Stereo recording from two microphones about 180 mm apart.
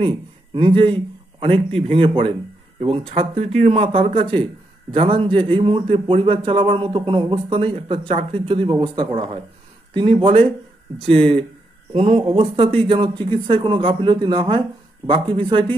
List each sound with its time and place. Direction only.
0.0 s a man's voice: 25° right (ahead or behind)
11.9 s a man's voice: 30° right (ahead or behind)